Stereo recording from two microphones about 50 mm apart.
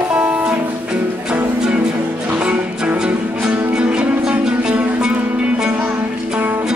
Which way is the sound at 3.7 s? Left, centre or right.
Right.